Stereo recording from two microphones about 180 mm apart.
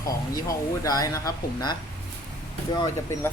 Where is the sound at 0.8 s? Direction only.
20° left (ahead or behind).